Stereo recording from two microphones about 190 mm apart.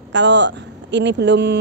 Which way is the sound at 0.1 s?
70° right (ahead or behind).